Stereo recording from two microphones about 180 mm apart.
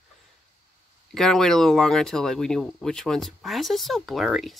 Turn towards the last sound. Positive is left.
turn(degrees=0)  # may be behind; listen again after turning